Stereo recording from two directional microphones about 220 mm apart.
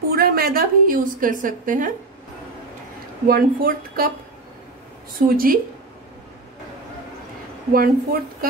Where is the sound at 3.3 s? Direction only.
40° right (ahead or behind).